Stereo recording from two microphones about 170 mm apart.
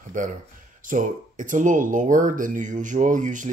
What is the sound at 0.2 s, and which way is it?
Speech, 50° right (ahead or behind).